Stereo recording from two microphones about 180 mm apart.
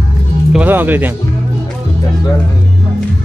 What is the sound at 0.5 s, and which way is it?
Speech, 10° right (ahead or behind).